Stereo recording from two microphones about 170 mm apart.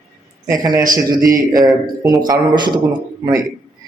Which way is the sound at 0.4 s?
20° right (ahead or behind).